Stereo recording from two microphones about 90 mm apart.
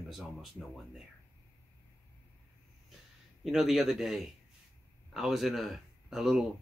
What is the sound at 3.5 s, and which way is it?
Speech, centre (ahead or behind).